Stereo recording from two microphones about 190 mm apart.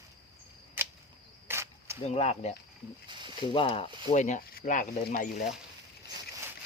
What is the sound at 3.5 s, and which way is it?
Speech, 30° left (ahead or behind).